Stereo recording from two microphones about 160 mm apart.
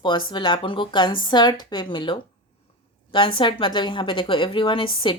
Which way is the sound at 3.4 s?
30° left (ahead or behind).